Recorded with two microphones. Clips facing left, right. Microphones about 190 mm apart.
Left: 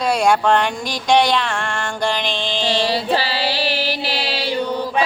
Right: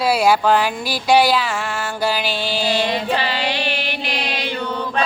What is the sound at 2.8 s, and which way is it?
Music, 35° left (ahead or behind).